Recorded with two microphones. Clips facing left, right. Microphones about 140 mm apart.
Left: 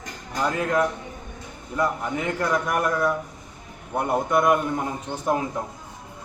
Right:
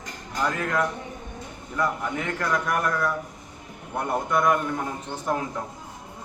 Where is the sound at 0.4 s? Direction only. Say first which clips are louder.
Left 3 dB; 20° left (ahead or behind).